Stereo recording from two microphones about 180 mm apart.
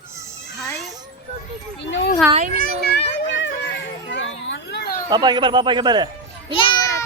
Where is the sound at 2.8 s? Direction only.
65° left (ahead or behind).